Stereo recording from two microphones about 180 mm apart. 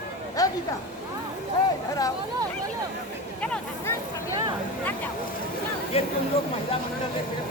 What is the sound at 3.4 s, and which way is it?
Speech, 5° left (ahead or behind).